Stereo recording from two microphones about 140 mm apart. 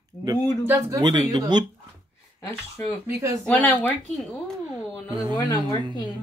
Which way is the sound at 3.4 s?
10° left (ahead or behind).